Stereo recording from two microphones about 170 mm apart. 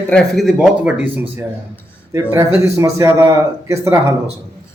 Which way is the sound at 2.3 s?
15° right (ahead or behind).